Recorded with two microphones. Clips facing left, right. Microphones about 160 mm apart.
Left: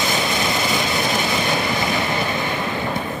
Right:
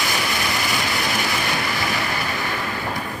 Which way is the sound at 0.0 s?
20° left (ahead or behind).